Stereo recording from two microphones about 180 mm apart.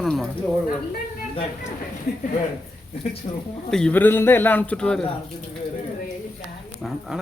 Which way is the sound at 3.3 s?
30° left (ahead or behind).